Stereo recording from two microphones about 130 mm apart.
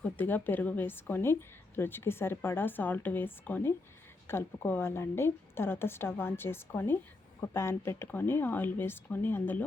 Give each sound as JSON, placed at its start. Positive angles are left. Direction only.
{"t": 0.0, "sound": "a woman's voice", "side_deg": 15}